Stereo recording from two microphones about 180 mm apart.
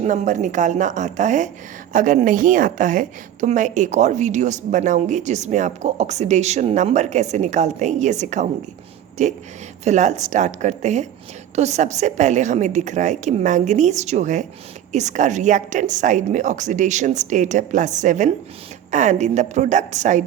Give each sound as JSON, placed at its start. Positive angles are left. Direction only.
{"t": 0.0, "sound": "a woman's voice", "side_deg": -40}